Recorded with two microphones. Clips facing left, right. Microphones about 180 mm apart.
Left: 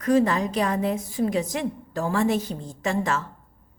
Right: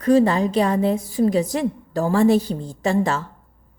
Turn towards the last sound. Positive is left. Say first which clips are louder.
# right 5 dB
turn(degrees=-30)  # may be behind; listen again after turning